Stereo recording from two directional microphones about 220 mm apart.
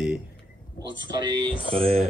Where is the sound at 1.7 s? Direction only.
25° right (ahead or behind).